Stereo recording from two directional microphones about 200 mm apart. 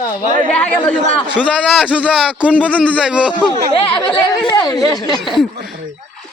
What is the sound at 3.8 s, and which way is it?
Speech, 25° left (ahead or behind).